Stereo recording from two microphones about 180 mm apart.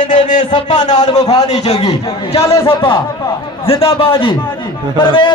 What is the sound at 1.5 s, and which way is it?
Speech, 35° left (ahead or behind).